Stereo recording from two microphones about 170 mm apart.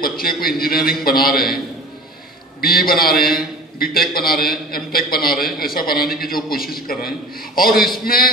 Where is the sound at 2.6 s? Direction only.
60° left (ahead or behind).